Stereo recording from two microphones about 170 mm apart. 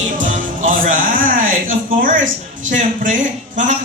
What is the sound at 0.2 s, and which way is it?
Music, 50° right (ahead or behind).